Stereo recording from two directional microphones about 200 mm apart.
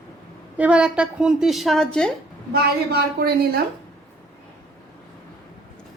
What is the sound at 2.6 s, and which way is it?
Speech, 50° right (ahead or behind).